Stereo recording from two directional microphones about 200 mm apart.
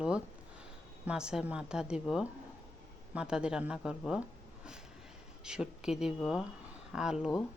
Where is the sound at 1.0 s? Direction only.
5° right (ahead or behind).